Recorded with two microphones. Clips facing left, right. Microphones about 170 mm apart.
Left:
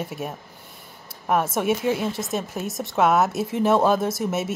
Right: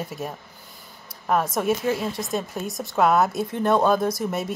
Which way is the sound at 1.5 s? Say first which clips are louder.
Left 1 dB; 5° left (ahead or behind).